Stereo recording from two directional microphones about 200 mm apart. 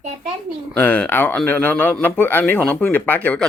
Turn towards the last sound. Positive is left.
turn(degrees=10)  # may be behind; listen again after turning